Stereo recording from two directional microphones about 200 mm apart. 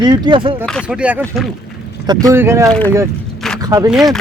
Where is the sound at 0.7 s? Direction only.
Centre (ahead or behind).